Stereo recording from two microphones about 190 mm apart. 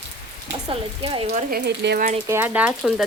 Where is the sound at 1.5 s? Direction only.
55° right (ahead or behind).